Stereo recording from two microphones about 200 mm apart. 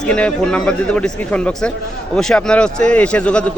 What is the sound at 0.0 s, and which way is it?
A man's voice, 5° left (ahead or behind).